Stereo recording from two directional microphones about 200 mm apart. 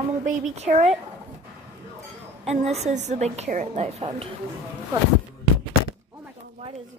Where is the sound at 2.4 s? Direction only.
30° right (ahead or behind).